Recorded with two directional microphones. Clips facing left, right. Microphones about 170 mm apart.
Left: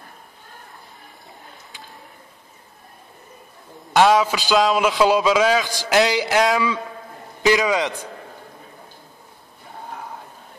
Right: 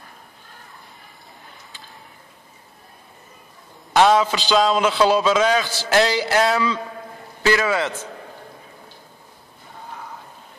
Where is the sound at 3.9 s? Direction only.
10° left (ahead or behind).